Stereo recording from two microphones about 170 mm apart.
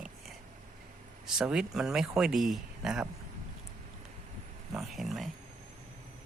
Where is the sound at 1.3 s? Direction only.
5° right (ahead or behind).